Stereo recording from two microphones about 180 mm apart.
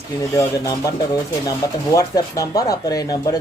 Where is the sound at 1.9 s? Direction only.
20° left (ahead or behind).